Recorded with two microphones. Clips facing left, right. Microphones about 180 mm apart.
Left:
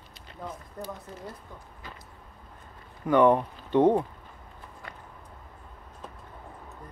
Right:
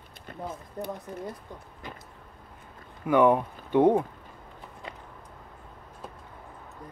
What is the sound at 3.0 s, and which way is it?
Speech, 10° right (ahead or behind).